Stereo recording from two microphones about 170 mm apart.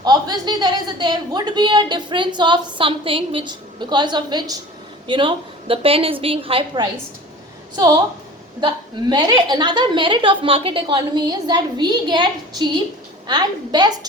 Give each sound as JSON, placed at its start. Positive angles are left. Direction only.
{"t": 0.0, "sound": "a woman's voice", "side_deg": -25}
{"t": 8.6, "sound": "a woman's voice", "side_deg": -25}